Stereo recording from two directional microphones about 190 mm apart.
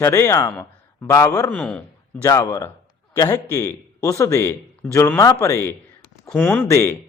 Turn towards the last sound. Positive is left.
turn(degrees=10)  # may be behind; listen again after turning